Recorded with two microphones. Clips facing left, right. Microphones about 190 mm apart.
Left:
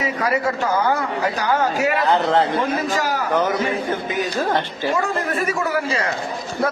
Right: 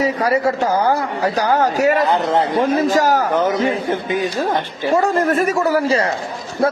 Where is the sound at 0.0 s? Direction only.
35° right (ahead or behind).